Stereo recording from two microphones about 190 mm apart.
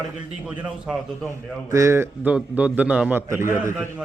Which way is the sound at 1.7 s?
15° right (ahead or behind).